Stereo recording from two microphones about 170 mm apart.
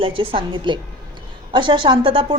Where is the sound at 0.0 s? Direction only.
30° right (ahead or behind).